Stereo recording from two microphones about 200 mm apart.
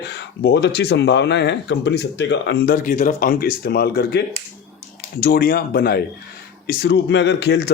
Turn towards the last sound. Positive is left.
turn(degrees=55)  # may be behind; listen again after turning